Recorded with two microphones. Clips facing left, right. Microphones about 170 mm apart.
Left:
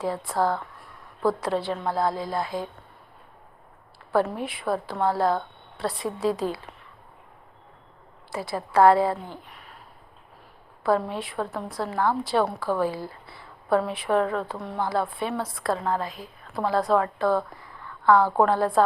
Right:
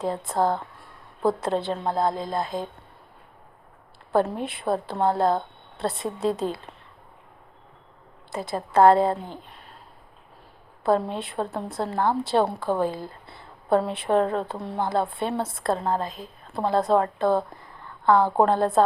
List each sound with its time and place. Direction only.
0.0 s a woman's voice: 20° right (ahead or behind)
4.1 s a woman's voice: 25° right (ahead or behind)
8.3 s a woman's voice: 20° right (ahead or behind)
10.8 s a woman's voice: 25° right (ahead or behind)